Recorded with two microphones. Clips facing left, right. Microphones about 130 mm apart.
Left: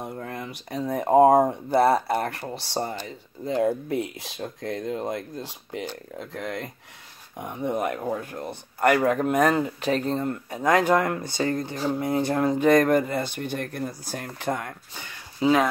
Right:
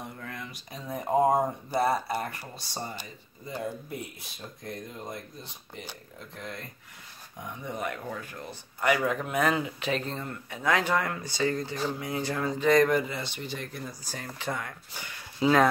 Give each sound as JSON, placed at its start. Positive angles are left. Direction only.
{"t": 0.3, "sound": "speech", "side_deg": 60}
{"t": 7.3, "sound": "speech", "side_deg": 55}
{"t": 15.0, "sound": "a sound", "side_deg": 25}